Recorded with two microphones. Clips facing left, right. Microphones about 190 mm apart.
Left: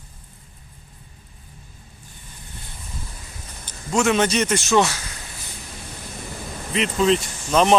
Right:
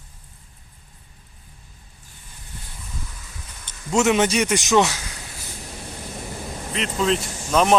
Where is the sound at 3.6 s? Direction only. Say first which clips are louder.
Left 3 dB; 40° left (ahead or behind).